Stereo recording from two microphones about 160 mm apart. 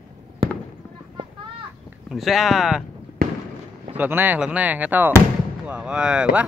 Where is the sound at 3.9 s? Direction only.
10° right (ahead or behind).